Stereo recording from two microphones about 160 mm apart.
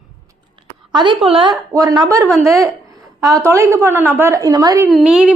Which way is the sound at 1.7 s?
20° right (ahead or behind).